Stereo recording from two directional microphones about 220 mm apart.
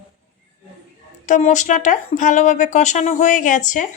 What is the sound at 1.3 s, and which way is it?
Speech, 35° left (ahead or behind).